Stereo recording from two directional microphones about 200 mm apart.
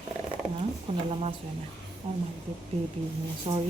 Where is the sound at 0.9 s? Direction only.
25° right (ahead or behind).